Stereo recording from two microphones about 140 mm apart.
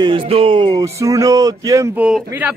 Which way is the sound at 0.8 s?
25° right (ahead or behind).